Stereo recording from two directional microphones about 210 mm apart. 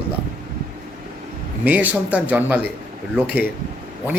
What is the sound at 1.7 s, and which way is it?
A man's voice, 5° right (ahead or behind).